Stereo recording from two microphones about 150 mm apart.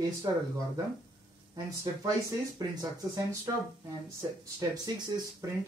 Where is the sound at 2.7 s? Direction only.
25° right (ahead or behind).